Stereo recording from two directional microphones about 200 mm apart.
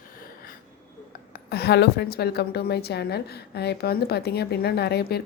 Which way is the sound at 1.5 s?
55° left (ahead or behind).